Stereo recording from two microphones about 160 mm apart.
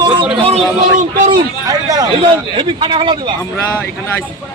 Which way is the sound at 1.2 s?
25° right (ahead or behind).